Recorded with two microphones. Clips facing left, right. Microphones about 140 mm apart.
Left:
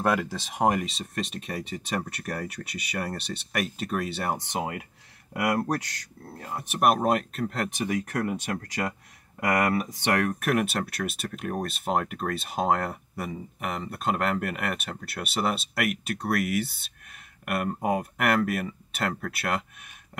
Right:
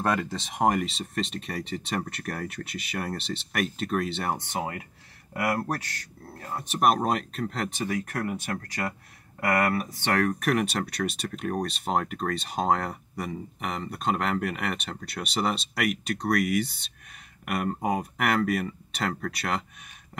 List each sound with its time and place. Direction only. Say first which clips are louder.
0.0 s speech: left 1 dB; 5° left (ahead or behind)
4.5 s speech: left 1 dB; 20° left (ahead or behind)
6.5 s speech: even; 5° left (ahead or behind)
7.8 s speech: left 2 dB; 20° left (ahead or behind)